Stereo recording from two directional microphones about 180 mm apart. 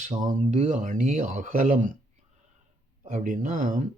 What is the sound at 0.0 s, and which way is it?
Speech, 40° right (ahead or behind).